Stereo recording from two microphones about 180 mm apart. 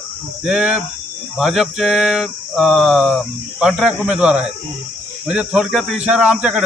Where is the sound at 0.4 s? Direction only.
5° right (ahead or behind).